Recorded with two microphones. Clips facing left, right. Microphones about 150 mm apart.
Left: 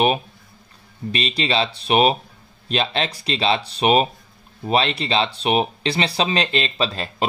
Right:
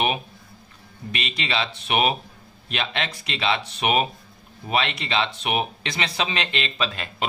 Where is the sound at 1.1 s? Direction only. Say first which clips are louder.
Left 6 dB; 35° left (ahead or behind).